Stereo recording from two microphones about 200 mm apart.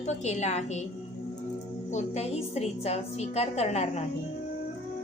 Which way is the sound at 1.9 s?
35° left (ahead or behind).